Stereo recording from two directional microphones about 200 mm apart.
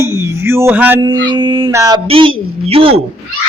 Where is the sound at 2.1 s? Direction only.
25° right (ahead or behind).